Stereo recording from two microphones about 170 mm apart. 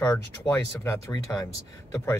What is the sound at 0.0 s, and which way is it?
Speech, 15° left (ahead or behind).